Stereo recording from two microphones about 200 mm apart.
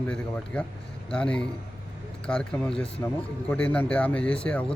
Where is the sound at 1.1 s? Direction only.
5° left (ahead or behind).